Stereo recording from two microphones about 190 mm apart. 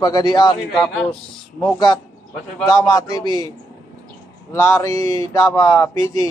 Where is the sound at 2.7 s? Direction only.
20° left (ahead or behind).